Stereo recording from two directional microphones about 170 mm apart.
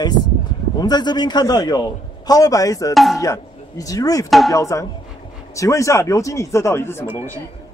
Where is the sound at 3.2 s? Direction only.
20° left (ahead or behind).